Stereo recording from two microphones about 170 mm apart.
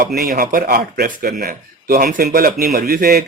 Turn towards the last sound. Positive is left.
turn(degrees=-65)  # may be behind; listen again after turning